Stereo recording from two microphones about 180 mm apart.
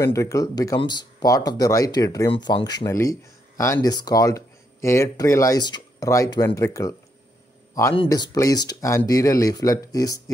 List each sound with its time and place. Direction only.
0.0 s speech: 15° left (ahead or behind)